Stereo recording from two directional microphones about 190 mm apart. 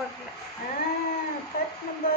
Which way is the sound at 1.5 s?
50° left (ahead or behind).